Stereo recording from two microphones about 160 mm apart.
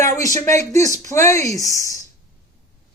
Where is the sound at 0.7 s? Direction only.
20° left (ahead or behind).